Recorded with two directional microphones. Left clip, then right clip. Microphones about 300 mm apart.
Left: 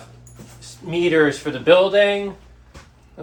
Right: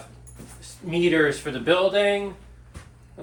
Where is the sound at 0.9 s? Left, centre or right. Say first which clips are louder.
Left 4 dB; centre.